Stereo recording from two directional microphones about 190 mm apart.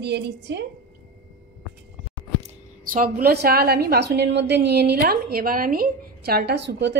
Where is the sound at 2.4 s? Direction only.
45° right (ahead or behind); by 6.9 s 65° right (ahead or behind).